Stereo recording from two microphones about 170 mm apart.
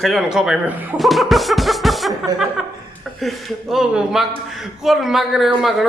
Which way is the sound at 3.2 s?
Centre (ahead or behind).